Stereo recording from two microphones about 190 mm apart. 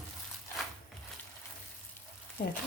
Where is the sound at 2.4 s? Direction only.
55° left (ahead or behind).